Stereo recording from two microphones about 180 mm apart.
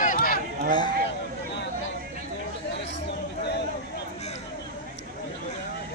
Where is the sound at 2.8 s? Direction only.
75° left (ahead or behind).